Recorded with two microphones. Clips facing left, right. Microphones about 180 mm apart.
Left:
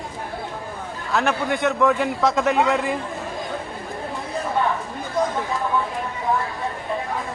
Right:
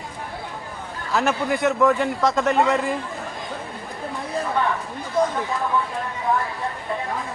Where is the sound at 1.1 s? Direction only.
Centre (ahead or behind).